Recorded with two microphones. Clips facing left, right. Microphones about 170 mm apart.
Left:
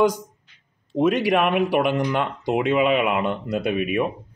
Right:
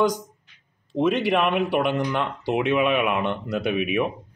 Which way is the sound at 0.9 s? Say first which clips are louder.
Left 2 dB; 10° left (ahead or behind).